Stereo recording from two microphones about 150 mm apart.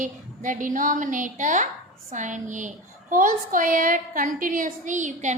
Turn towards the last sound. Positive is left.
turn(degrees=-55)  # may be behind; listen again after turning